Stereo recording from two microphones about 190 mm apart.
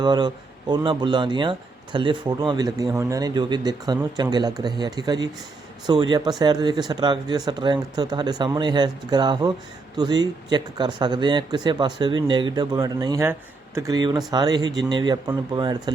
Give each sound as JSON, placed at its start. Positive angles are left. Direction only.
{"t": 0.0, "sound": "speech", "side_deg": -25}